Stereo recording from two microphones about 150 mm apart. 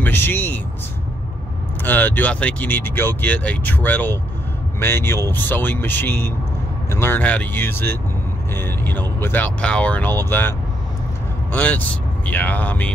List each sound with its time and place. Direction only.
0.0 s speech: 15° left (ahead or behind)
1.8 s speech: 10° left (ahead or behind)
11.5 s speech: 10° left (ahead or behind)